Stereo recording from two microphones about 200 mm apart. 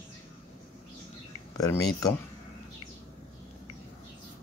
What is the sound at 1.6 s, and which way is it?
Speech, 15° left (ahead or behind).